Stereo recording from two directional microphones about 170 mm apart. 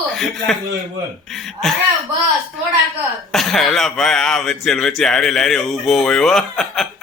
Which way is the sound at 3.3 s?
Centre (ahead or behind).